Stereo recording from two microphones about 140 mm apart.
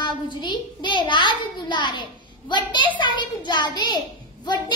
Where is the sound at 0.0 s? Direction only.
35° left (ahead or behind).